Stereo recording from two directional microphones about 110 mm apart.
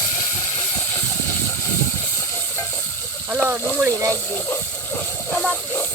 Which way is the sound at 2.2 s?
20° left (ahead or behind).